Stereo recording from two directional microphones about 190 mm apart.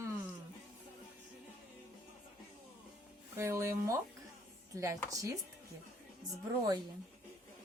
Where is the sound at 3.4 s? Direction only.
15° right (ahead or behind).